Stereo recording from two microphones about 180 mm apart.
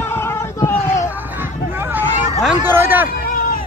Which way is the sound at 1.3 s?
10° right (ahead or behind).